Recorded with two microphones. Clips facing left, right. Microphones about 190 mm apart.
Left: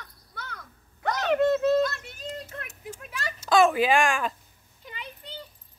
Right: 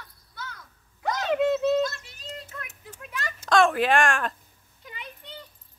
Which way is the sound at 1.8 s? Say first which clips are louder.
Left 2 dB; 55° left (ahead or behind).